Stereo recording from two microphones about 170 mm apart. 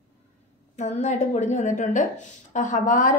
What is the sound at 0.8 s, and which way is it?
Speech, 40° left (ahead or behind).